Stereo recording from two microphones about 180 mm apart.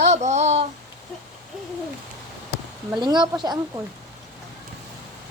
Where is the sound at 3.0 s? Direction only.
25° right (ahead or behind).